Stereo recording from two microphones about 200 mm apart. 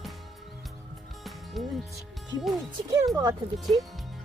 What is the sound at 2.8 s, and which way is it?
Speech, 20° right (ahead or behind).